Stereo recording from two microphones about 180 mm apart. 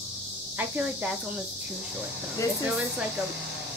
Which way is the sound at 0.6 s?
10° right (ahead or behind).